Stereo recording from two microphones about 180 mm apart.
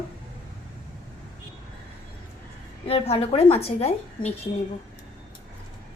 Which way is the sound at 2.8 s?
35° left (ahead or behind).